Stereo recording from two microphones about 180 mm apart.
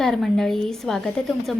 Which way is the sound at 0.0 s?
Centre (ahead or behind).